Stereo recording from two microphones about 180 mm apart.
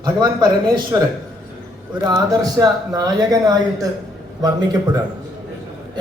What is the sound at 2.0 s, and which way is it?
Speech, 20° right (ahead or behind).